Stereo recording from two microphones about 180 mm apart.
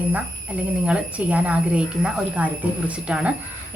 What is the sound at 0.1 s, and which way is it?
Speech, 5° right (ahead or behind).